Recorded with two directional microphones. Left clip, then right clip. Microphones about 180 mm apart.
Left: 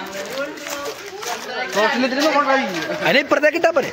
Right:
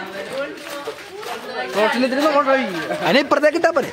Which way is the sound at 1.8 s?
10° right (ahead or behind).